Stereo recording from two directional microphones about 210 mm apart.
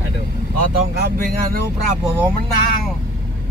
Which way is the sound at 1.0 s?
45° right (ahead or behind).